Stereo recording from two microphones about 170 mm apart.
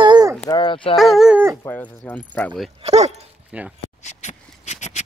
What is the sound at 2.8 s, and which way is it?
Speech, 40° right (ahead or behind).